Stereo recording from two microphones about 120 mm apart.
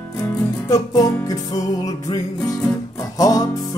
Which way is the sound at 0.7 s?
30° left (ahead or behind).